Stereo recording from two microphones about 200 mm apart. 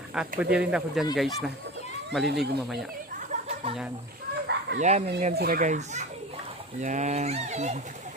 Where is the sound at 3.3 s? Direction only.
35° right (ahead or behind).